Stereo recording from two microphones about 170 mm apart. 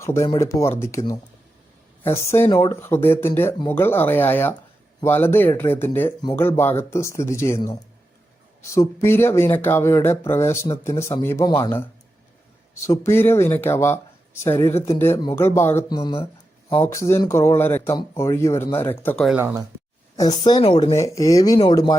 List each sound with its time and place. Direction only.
0.0 s speech: 15° left (ahead or behind)
12.8 s speech: 15° left (ahead or behind)
19.4 s speech: 10° right (ahead or behind)
20.1 s speech: 25° left (ahead or behind)
20.9 s speech: 20° left (ahead or behind)